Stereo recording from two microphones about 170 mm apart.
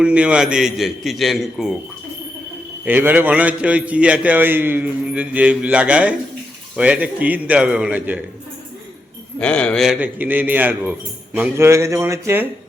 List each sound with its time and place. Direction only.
0.0 s a man's voice: 5° right (ahead or behind)
2.8 s a man's voice: 10° right (ahead or behind)
9.4 s a man's voice: 5° left (ahead or behind); by 12.5 s 15° right (ahead or behind)